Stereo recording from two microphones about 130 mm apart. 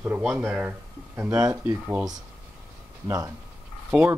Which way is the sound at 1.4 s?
25° right (ahead or behind).